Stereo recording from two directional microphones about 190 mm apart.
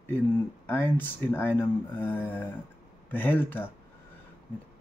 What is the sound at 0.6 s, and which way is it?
Speech, 10° left (ahead or behind).